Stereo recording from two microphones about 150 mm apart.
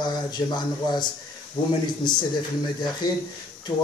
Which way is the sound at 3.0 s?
25° left (ahead or behind).